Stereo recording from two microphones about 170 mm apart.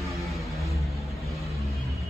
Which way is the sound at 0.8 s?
Centre (ahead or behind).